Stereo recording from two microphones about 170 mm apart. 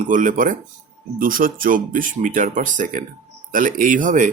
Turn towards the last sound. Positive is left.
turn(degrees=-50)  # may be behind; listen again after turning